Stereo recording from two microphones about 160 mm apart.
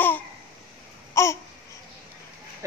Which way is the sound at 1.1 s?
15° left (ahead or behind).